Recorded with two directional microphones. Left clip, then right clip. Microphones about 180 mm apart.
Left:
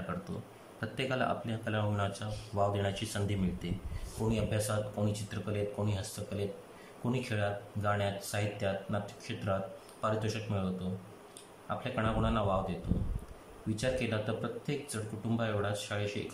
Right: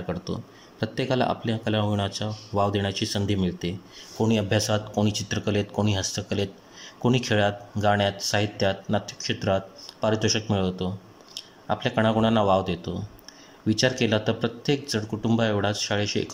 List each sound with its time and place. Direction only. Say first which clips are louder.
0.7 s speech: right 9 dB; 25° right (ahead or behind)
4.3 s speech: right 10 dB; 35° right (ahead or behind)
13.7 s speech: right 10 dB; 40° right (ahead or behind)